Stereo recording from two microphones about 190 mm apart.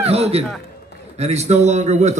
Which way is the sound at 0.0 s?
30° right (ahead or behind).